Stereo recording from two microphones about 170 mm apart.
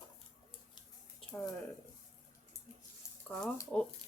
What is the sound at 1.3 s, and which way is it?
Speech, 15° left (ahead or behind).